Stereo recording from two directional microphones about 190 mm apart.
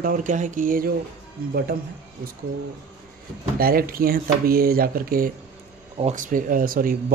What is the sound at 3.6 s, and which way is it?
Speech, 50° right (ahead or behind).